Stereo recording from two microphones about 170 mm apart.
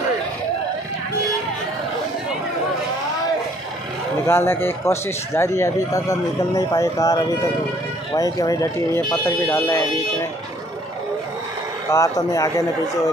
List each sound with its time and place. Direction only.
4.3 s speech: 15° left (ahead or behind)
11.9 s speech: 20° left (ahead or behind)